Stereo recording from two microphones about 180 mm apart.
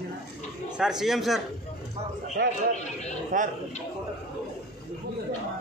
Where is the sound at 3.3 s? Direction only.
45° right (ahead or behind).